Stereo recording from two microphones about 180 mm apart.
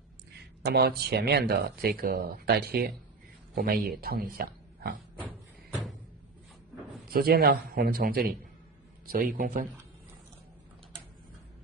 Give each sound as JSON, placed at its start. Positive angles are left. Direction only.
{"t": 0.6, "sound": "speech", "side_deg": -65}
{"t": 7.1, "sound": "a man's voice", "side_deg": -60}